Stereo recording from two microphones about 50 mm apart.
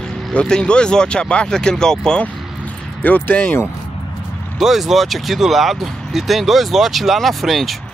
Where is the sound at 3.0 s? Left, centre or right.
Left.